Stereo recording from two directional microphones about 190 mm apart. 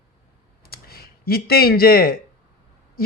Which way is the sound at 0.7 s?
55° left (ahead or behind).